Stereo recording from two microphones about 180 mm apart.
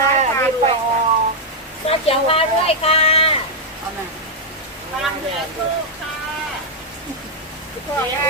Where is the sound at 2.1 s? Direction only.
35° left (ahead or behind).